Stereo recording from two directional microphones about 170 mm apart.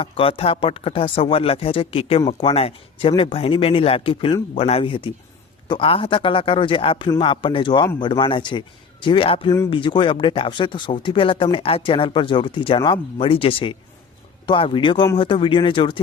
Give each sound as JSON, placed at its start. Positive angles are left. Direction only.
{"t": 0.0, "sound": "speech", "side_deg": 35}